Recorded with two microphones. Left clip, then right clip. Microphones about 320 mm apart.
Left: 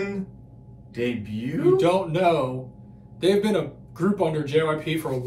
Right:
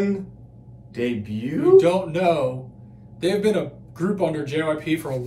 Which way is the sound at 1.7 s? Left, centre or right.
Centre.